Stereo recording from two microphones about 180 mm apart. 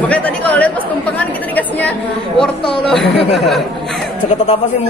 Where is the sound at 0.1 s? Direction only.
5° left (ahead or behind).